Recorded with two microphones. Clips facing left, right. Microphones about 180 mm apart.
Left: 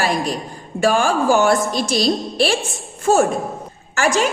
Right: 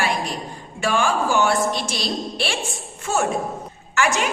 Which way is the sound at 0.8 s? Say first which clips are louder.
Left 4 dB; 40° left (ahead or behind).